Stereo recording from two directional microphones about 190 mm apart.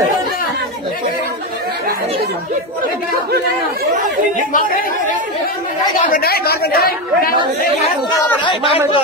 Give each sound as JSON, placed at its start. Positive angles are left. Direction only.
{"t": 3.1, "sound": "chatter", "side_deg": -55}
{"t": 6.1, "sound": "chatter", "side_deg": 55}
{"t": 8.5, "sound": "a man's voice", "side_deg": 25}